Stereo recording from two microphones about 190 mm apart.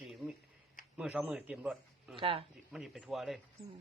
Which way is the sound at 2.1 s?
25° right (ahead or behind).